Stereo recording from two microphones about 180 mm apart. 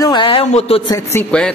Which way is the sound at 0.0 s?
25° left (ahead or behind).